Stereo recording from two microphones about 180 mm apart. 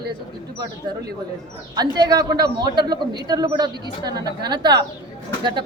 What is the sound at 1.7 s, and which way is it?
A man's voice, 20° right (ahead or behind).